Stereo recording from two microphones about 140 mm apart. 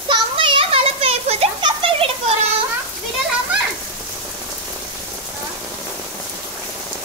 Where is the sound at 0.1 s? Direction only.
40° right (ahead or behind).